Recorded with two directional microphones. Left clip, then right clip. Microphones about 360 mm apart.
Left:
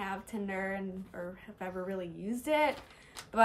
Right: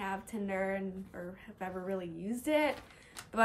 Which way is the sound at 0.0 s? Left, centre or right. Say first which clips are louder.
Even; centre.